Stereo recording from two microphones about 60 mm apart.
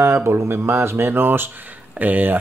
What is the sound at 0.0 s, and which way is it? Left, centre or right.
Speech, right.